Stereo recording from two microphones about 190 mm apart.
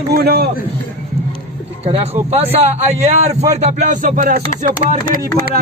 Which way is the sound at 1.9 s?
35° right (ahead or behind).